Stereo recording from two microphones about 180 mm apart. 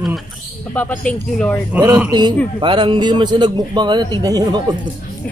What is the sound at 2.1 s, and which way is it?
A man's voice, 25° right (ahead or behind).